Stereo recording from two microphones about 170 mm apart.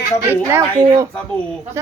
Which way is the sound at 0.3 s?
15° right (ahead or behind).